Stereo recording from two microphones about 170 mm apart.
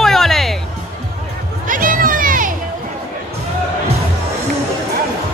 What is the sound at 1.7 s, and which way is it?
Children playing, 50° right (ahead or behind).